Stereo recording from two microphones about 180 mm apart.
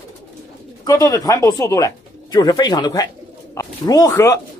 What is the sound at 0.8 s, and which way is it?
Speech, 20° left (ahead or behind).